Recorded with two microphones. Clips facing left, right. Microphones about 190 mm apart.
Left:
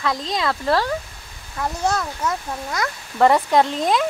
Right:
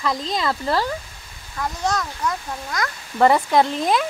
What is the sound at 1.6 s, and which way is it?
Speech, 30° left (ahead or behind).